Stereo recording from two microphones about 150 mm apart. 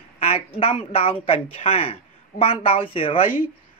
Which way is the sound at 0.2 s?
40° left (ahead or behind).